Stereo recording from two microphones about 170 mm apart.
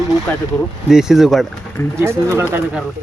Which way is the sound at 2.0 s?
15° right (ahead or behind).